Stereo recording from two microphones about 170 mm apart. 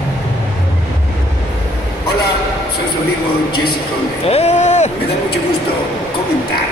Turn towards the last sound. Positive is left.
turn(degrees=40)  # may be behind; listen again after turning